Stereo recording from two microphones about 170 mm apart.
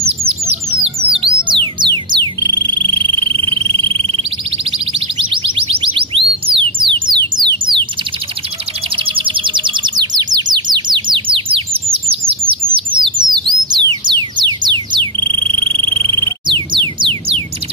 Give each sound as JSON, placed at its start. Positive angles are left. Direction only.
{"t": 0.0, "sound": "bird", "side_deg": -35}
{"t": 0.8, "sound": "music", "side_deg": -30}
{"t": 8.9, "sound": "chirp", "side_deg": -30}
{"t": 12.7, "sound": "bird", "side_deg": -25}
{"t": 14.4, "sound": "frog", "side_deg": -25}